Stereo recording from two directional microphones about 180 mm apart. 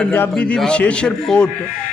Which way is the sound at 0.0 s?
5° left (ahead or behind).